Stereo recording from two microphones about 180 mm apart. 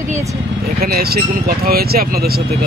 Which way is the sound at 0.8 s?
60° right (ahead or behind).